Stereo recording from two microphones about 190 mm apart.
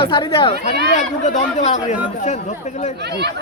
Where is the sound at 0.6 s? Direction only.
40° left (ahead or behind).